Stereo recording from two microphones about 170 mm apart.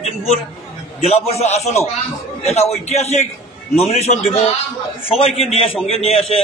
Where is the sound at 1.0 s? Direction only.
40° left (ahead or behind).